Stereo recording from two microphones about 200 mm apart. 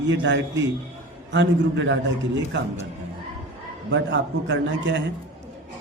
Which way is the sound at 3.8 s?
60° right (ahead or behind).